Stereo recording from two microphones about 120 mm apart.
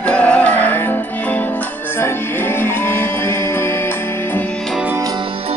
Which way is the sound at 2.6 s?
20° left (ahead or behind).